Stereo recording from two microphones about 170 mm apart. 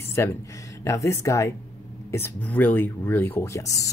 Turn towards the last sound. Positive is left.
turn(degrees=20)  # may be behind; listen again after turning